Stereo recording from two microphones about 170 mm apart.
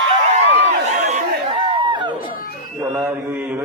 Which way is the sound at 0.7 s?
45° right (ahead or behind).